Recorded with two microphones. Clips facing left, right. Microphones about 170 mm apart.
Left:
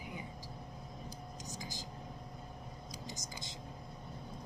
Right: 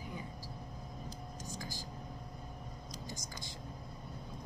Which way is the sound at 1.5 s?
20° left (ahead or behind).